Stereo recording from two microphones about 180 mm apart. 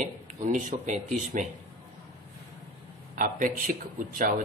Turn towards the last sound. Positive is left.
turn(degrees=-50)  # may be behind; listen again after turning